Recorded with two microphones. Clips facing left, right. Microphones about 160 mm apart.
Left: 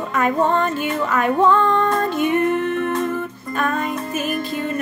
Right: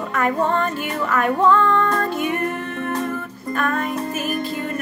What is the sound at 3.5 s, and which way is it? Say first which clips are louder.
Music: left 1 dB; 20° left (ahead or behind).